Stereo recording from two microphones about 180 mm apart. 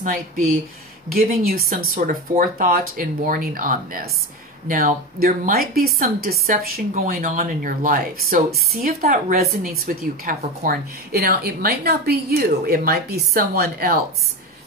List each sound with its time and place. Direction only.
1.1 s a woman's voice: 55° right (ahead or behind)